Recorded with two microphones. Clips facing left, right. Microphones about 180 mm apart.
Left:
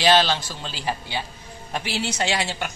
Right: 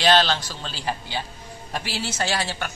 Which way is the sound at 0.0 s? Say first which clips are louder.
Left 1 dB; 10° left (ahead or behind).